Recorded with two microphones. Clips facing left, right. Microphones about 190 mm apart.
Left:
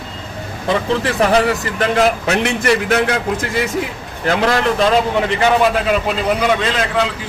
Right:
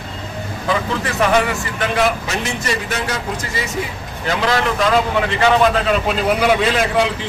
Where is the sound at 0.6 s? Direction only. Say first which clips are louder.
Left 4 dB; 35° left (ahead or behind).